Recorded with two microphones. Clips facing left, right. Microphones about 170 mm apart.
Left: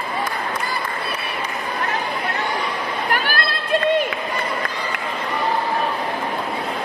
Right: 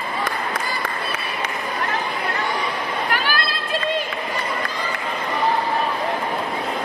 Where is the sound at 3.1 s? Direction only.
55° left (ahead or behind).